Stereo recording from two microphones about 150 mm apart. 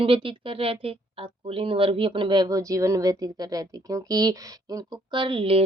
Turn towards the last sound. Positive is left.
turn(degrees=-35)  # may be behind; listen again after turning